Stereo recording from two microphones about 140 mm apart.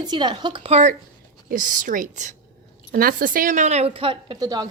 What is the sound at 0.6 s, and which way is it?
Speech, 50° right (ahead or behind).